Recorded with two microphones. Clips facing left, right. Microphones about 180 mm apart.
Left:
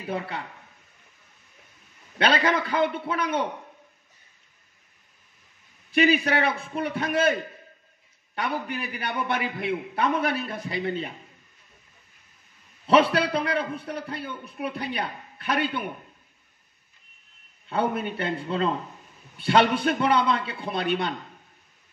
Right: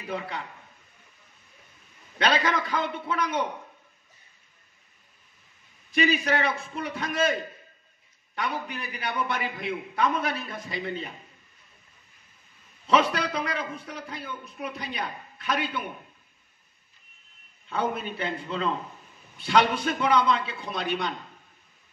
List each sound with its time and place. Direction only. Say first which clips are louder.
2.1 s a man's voice: left 2 dB; 60° left (ahead or behind)
5.9 s a man's voice: left 3 dB; 60° left (ahead or behind)
8.4 s a man's voice: left 3 dB; 60° left (ahead or behind)
12.8 s a man's voice: left 4 dB; 60° left (ahead or behind)
17.6 s a man's voice: left 3 dB; 60° left (ahead or behind)